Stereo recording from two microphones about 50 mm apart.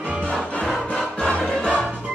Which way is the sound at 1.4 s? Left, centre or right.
Centre.